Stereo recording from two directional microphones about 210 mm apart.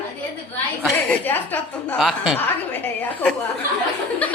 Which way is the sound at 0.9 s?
10° left (ahead or behind).